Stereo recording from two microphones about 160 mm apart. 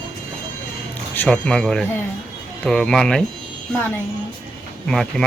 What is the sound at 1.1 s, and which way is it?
Speech, 10° left (ahead or behind).